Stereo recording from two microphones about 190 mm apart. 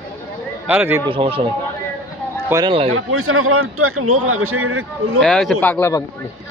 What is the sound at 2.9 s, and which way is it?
A man's voice, 90° right.